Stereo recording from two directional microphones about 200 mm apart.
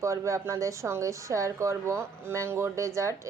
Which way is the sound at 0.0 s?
15° right (ahead or behind).